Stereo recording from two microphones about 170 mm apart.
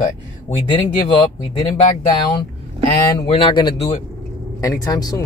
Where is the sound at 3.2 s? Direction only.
35° left (ahead or behind).